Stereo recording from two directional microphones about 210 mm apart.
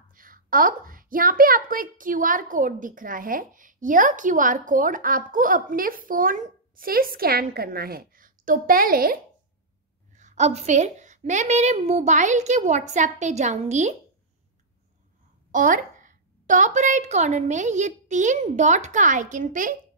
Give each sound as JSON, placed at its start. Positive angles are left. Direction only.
{"t": 0.1, "sound": "a woman's voice", "side_deg": -40}
{"t": 15.5, "sound": "a woman's voice", "side_deg": -40}